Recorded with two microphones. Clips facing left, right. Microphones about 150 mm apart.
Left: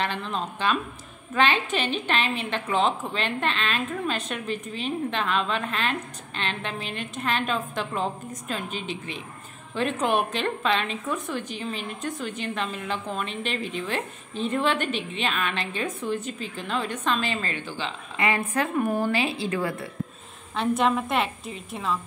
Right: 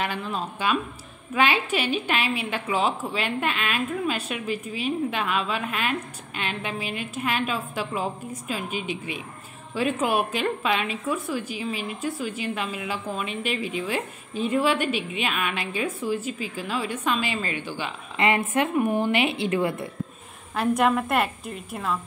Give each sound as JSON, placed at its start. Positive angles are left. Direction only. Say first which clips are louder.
{"t": 0.0, "sound": "a woman's voice", "louder": "even", "side_deg": -10}
{"t": 18.1, "sound": "a woman's voice", "louder": "right 3 dB", "side_deg": -25}
{"t": 20.5, "sound": "a woman's voice", "louder": "right 1 dB", "side_deg": -5}